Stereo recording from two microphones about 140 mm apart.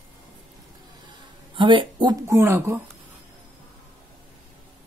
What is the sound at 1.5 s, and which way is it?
Speech, 35° right (ahead or behind).